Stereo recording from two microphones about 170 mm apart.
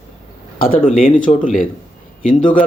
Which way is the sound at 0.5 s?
60° left (ahead or behind).